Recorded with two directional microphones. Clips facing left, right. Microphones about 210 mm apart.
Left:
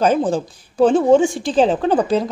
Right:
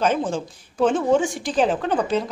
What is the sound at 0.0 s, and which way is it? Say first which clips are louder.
A woman's voice: left 5 dB; 35° left (ahead or behind).